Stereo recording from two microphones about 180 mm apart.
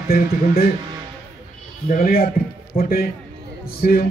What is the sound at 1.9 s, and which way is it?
A man's voice, 50° left (ahead or behind).